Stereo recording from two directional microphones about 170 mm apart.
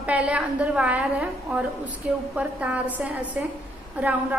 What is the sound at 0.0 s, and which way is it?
A woman's voice, 5° right (ahead or behind).